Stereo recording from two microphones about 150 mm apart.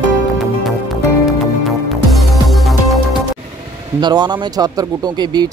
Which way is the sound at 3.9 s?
30° right (ahead or behind).